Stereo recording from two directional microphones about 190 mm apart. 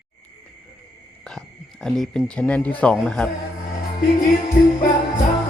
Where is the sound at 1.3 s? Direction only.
5° left (ahead or behind).